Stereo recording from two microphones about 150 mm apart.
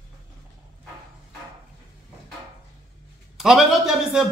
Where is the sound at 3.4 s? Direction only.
5° right (ahead or behind).